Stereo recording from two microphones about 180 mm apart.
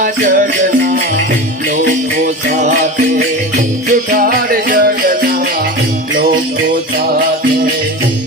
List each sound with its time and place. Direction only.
0.0 s music: 45° right (ahead or behind)
4.1 s music: 55° right (ahead or behind)